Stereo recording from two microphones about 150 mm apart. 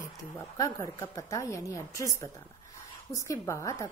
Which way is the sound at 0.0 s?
20° left (ahead or behind).